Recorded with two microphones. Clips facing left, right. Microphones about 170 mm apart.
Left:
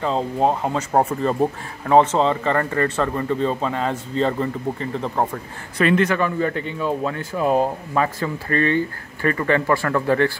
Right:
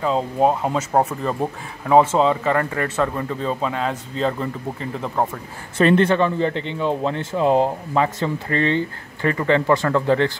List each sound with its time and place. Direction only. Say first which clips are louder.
0.0 s speech: right 1 dB; 5° right (ahead or behind)
5.8 s speech: right 2 dB; 30° right (ahead or behind)